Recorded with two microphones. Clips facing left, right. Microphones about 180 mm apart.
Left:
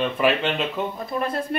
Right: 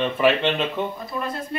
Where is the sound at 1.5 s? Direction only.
65° left (ahead or behind).